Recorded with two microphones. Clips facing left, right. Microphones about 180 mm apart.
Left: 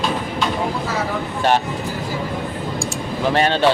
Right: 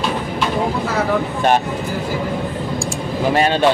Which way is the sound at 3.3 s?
10° right (ahead or behind).